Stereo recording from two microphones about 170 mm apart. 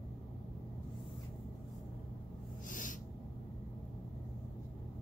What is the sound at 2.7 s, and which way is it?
Owl, 50° left (ahead or behind).